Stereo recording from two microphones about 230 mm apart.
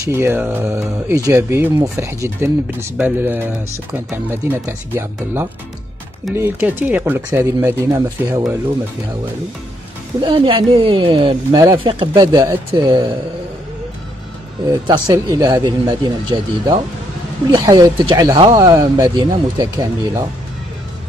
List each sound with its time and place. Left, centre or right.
0.0 s speech: centre
10.2 s speech: right
14.7 s speech: centre